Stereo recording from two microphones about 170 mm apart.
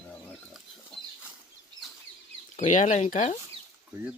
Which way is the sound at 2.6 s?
45° left (ahead or behind).